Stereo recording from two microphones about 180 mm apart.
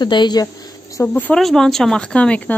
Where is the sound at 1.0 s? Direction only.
10° left (ahead or behind).